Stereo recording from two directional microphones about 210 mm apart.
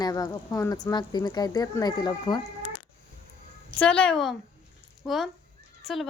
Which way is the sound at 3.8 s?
5° left (ahead or behind).